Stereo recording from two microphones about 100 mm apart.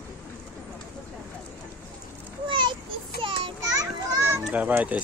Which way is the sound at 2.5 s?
50° right (ahead or behind).